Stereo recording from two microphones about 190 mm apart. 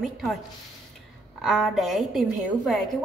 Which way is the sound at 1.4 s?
Centre (ahead or behind).